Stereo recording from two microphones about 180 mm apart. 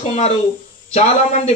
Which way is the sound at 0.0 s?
40° left (ahead or behind).